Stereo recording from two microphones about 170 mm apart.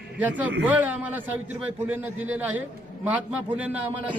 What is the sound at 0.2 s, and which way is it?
A man's voice, 10° right (ahead or behind).